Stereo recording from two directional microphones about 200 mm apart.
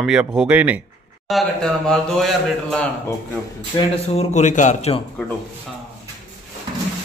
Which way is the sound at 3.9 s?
30° left (ahead or behind).